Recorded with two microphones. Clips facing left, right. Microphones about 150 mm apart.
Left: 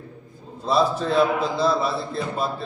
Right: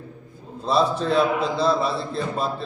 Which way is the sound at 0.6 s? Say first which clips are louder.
Even; centre (ahead or behind).